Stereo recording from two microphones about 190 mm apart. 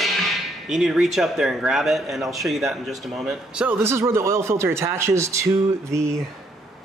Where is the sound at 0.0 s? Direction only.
Centre (ahead or behind).